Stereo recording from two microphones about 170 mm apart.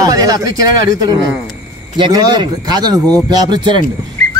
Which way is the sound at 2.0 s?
25° right (ahead or behind).